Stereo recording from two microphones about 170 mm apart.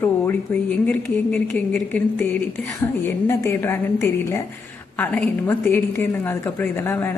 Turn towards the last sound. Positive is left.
turn(degrees=10)  # may be behind; listen again after turning